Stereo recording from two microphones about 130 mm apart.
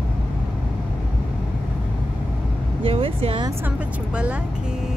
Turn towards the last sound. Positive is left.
turn(degrees=-10)  # may be behind; listen again after turning